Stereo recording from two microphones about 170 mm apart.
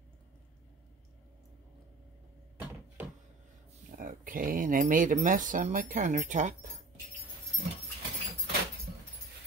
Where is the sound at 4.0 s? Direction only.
55° right (ahead or behind).